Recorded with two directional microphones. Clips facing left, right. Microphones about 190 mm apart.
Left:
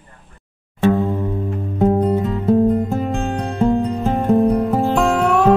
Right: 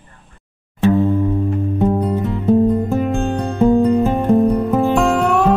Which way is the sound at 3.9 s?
Centre (ahead or behind).